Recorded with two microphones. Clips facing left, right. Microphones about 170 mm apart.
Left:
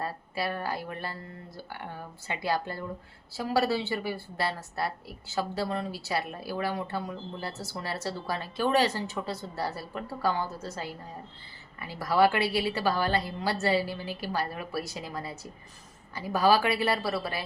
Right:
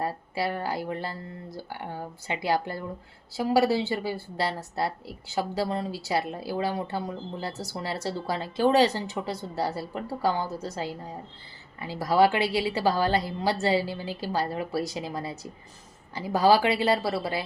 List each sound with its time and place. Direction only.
0.0 s speech: 20° right (ahead or behind)
2.0 s a woman's voice: 20° right (ahead or behind)